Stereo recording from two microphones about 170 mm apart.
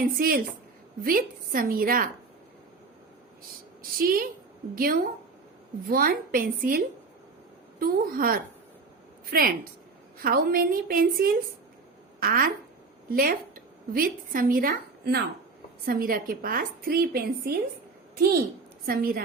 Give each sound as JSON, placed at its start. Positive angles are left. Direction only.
{"t": 0.0, "sound": "a woman's voice", "side_deg": -60}
{"t": 4.0, "sound": "a woman's voice", "side_deg": -60}
{"t": 18.9, "sound": "a woman's voice", "side_deg": -60}